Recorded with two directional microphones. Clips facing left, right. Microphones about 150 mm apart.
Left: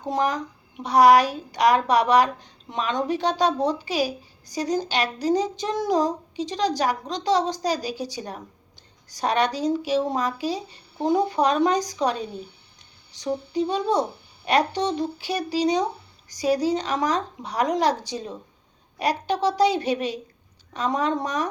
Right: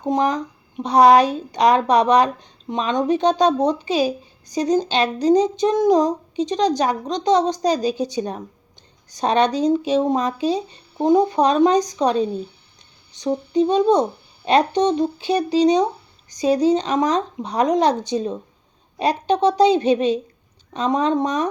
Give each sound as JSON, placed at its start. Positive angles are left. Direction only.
{"t": 0.0, "sound": "a woman's voice", "side_deg": -20}